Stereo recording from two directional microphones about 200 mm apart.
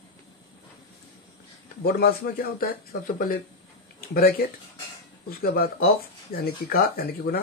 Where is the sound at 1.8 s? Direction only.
50° left (ahead or behind).